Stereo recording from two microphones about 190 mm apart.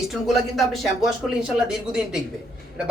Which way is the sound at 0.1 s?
Centre (ahead or behind).